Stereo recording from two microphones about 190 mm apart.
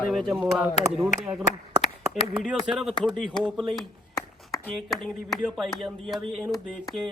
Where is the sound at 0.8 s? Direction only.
35° left (ahead or behind).